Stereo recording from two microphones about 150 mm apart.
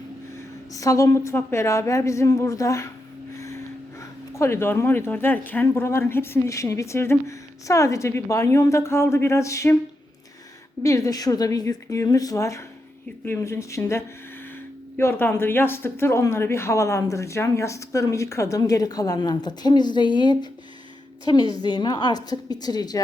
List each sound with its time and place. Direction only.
0.7 s speech: 20° left (ahead or behind)
3.3 s a sound: 20° left (ahead or behind)
4.0 s speech: 15° left (ahead or behind)
10.8 s speech: 20° left (ahead or behind)
21.5 s speech: 30° left (ahead or behind)